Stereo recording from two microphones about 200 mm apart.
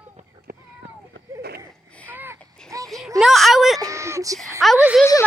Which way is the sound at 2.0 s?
10° right (ahead or behind).